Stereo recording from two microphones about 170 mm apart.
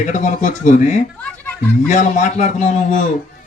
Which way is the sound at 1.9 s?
45° left (ahead or behind).